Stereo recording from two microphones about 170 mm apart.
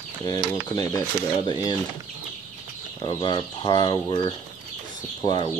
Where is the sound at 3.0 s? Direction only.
25° left (ahead or behind).